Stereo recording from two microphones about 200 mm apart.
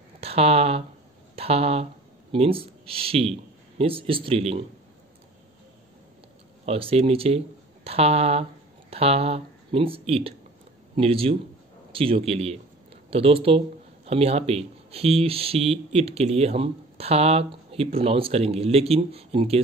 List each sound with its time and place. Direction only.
0.2 s a man's voice: 30° right (ahead or behind)
6.6 s speech: 30° right (ahead or behind)